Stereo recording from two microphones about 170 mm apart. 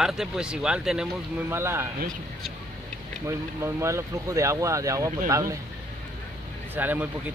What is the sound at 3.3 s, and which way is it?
Speech, 15° right (ahead or behind).